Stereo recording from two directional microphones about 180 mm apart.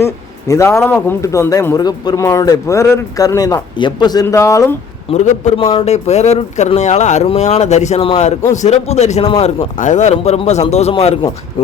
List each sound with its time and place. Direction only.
0.0 s speech: 15° left (ahead or behind)
5.1 s speech: 40° left (ahead or behind)
9.7 s speech: 45° left (ahead or behind)